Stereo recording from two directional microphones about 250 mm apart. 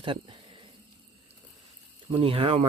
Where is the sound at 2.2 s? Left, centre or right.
Right.